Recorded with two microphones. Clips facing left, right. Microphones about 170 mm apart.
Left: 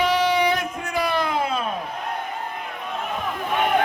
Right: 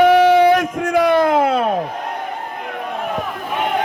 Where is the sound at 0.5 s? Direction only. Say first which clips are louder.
Right 9 dB; 90° right.